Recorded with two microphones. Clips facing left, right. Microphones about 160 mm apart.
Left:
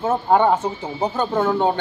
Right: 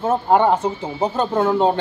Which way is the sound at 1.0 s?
25° right (ahead or behind).